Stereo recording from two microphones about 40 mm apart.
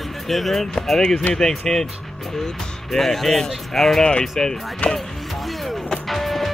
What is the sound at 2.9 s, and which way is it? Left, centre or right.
Speech, centre.